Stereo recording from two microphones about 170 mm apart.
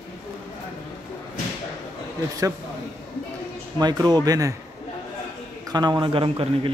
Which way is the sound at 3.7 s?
25° right (ahead or behind).